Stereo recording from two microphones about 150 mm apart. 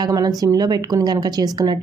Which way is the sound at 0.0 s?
25° right (ahead or behind).